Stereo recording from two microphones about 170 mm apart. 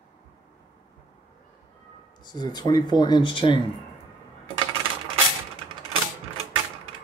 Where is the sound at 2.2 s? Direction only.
25° left (ahead or behind).